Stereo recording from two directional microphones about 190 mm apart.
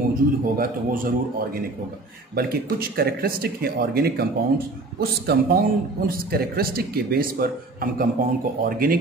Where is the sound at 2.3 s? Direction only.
55° right (ahead or behind).